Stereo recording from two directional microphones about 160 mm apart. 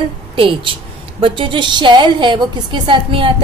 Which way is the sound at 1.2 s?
30° right (ahead or behind).